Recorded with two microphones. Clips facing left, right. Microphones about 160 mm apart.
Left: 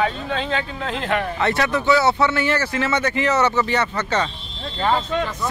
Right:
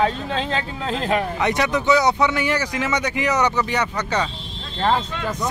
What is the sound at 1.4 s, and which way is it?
Speech, 15° right (ahead or behind).